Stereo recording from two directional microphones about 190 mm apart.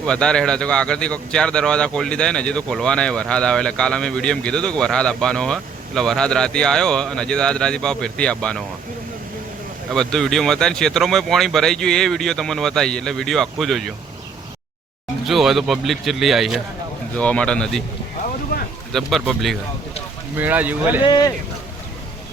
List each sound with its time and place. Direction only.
0.0 s a man's voice: 5° left (ahead or behind)
9.9 s a man's voice: centre (ahead or behind)
15.3 s a man's voice: centre (ahead or behind)
18.5 s a sound: 55° left (ahead or behind)
18.9 s a man's voice: centre (ahead or behind)
21.0 s speech: 20° left (ahead or behind)